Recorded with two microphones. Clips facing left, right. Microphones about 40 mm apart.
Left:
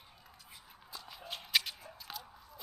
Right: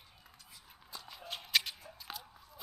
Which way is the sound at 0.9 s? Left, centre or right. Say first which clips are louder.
Even; centre.